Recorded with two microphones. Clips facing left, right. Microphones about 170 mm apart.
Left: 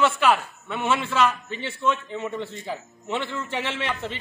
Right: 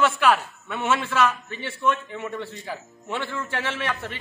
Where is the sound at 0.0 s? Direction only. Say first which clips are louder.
Even; 15° left (ahead or behind).